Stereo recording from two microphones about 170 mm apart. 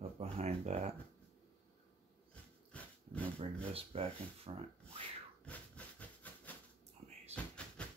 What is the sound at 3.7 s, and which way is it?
Speech, 35° right (ahead or behind).